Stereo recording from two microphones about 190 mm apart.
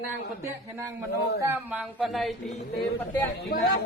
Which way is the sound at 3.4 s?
60° left (ahead or behind).